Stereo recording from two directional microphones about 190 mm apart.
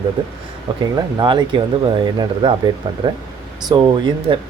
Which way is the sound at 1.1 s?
25° right (ahead or behind).